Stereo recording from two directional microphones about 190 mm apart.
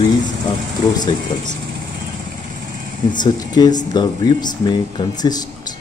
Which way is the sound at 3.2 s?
20° left (ahead or behind).